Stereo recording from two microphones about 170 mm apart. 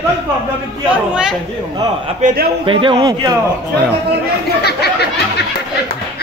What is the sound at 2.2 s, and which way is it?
Speech, 45° right (ahead or behind).